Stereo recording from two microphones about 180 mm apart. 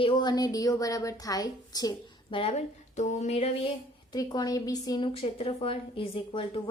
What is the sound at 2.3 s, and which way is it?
Speech, 35° left (ahead or behind).